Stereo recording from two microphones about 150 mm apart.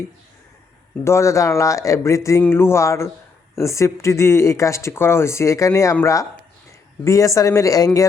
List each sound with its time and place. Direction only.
1.0 s speech: 20° left (ahead or behind)
2.4 s music: 15° left (ahead or behind)
3.5 s speech: 20° left (ahead or behind)